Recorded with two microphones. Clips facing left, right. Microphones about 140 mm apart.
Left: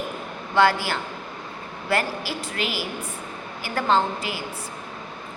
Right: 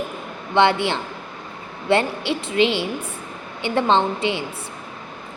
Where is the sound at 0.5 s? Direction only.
25° right (ahead or behind).